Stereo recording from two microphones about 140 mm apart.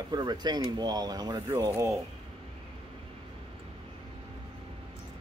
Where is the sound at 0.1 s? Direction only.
30° right (ahead or behind).